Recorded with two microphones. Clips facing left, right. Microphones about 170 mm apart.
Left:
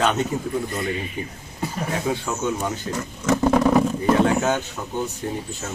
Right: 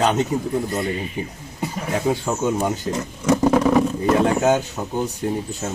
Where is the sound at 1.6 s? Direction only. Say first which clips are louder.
Right 3 dB; 30° right (ahead or behind).